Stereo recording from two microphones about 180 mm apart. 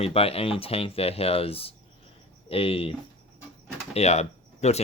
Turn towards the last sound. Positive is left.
turn(degrees=35)  # may be behind; listen again after turning